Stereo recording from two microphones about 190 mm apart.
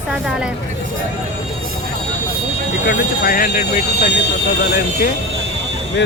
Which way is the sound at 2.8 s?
50° left (ahead or behind).